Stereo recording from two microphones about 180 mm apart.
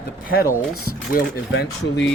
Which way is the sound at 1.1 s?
65° left (ahead or behind).